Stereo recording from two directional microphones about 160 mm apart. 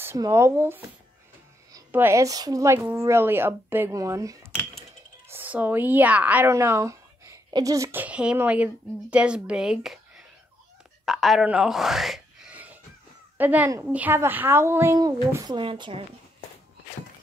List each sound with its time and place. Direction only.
0.0 s speech: 15° right (ahead or behind)
1.9 s a child's voice: 15° right (ahead or behind); by 16.0 s 30° right (ahead or behind)